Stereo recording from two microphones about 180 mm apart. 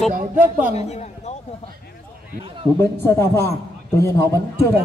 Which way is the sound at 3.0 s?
15° left (ahead or behind).